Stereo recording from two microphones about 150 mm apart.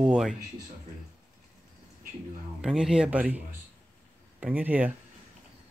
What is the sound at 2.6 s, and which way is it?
Speech, 5° right (ahead or behind).